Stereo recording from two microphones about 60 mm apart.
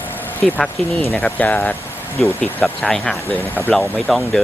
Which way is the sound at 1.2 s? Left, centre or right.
Left.